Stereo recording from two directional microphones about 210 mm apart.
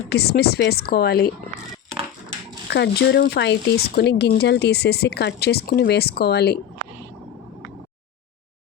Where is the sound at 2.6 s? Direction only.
55° left (ahead or behind).